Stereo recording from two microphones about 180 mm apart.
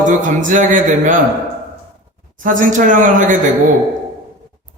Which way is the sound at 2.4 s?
50° right (ahead or behind).